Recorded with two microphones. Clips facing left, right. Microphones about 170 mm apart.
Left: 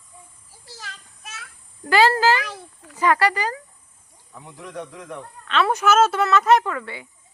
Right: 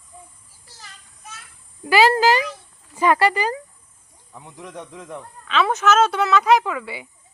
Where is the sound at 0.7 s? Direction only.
90° left.